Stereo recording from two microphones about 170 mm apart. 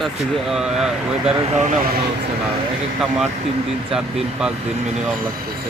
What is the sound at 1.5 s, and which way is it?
Speech, 45° right (ahead or behind).